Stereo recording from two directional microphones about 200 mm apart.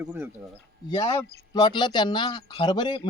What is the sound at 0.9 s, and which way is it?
Speech, 20° left (ahead or behind).